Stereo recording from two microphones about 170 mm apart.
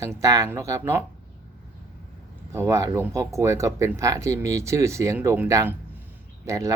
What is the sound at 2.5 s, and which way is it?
Speech, 15° right (ahead or behind).